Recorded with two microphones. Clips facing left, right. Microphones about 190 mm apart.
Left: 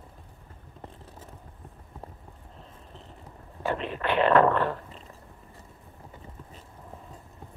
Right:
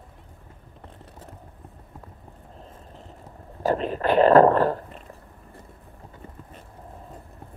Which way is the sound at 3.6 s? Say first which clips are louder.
Right 6 dB; 40° right (ahead or behind).